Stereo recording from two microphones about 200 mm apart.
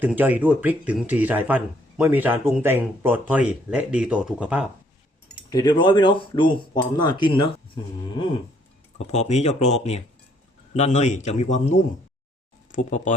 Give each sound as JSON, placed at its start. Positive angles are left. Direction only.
{"t": 0.0, "sound": "speech", "side_deg": -10}
{"t": 5.5, "sound": "speech", "side_deg": 20}
{"t": 9.0, "sound": "speech", "side_deg": 35}